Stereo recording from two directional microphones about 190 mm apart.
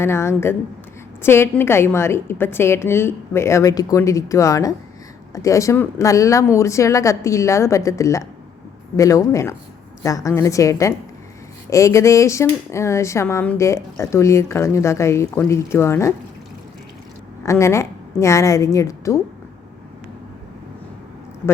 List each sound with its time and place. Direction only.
0.0 s speech: 15° left (ahead or behind)
17.4 s a woman's voice: 15° left (ahead or behind)